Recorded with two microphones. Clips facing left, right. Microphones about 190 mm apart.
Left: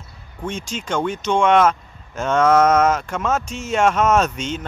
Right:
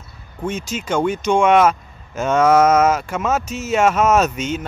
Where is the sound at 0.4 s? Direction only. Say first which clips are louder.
Right 3 dB; 5° right (ahead or behind).